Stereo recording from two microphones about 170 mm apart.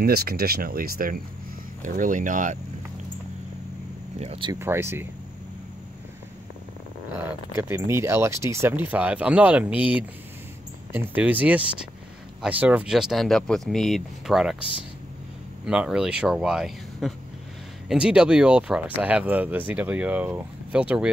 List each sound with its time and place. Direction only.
0.0 s speech: 65° right (ahead or behind); by 2.6 s 50° right (ahead or behind)
4.2 s speech: 30° right (ahead or behind)
4.6 s speech: 15° right (ahead or behind)
7.2 s speech: 10° right (ahead or behind)